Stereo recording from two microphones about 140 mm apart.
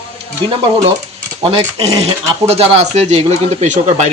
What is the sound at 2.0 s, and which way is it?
Speech, 45° right (ahead or behind).